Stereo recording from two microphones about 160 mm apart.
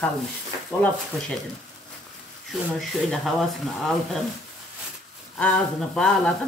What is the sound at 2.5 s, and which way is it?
Speech, centre (ahead or behind).